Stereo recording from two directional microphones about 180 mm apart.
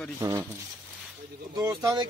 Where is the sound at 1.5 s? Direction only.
20° right (ahead or behind).